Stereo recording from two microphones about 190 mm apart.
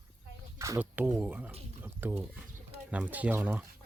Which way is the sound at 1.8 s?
10° right (ahead or behind).